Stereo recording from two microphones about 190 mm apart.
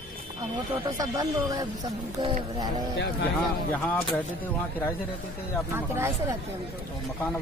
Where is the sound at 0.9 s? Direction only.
20° right (ahead or behind).